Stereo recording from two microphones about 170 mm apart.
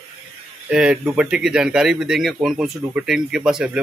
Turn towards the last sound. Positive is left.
turn(degrees=-5)  # may be behind; listen again after turning